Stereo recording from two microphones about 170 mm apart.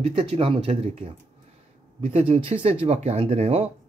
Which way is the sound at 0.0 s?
35° right (ahead or behind).